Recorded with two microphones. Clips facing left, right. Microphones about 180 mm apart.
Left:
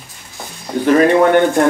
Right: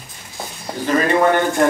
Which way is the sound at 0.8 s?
60° left (ahead or behind).